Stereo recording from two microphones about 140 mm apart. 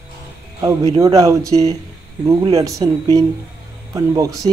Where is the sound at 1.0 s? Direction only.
25° right (ahead or behind).